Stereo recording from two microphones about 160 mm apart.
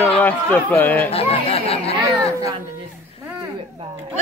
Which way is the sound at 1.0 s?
40° left (ahead or behind).